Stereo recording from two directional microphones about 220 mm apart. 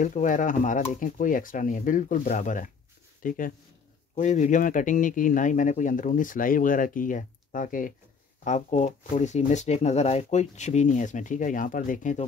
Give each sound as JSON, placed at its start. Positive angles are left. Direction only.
{"t": 0.0, "sound": "speech", "side_deg": 35}